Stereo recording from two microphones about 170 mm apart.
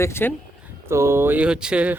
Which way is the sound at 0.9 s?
15° right (ahead or behind).